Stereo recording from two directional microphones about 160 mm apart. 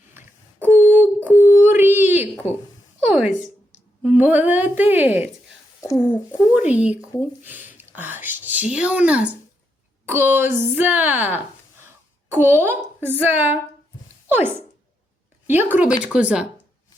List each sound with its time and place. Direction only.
0.1 s a sound: 15° right (ahead or behind)
3.1 s speech: 5° right (ahead or behind)
5.8 s speech: 15° left (ahead or behind)
6.5 s speech: 10° right (ahead or behind)